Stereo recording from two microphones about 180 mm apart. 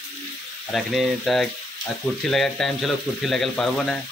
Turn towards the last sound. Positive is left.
turn(degrees=5)  # may be behind; listen again after turning